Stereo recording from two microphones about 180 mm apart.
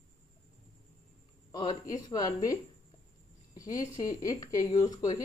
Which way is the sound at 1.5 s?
20° left (ahead or behind).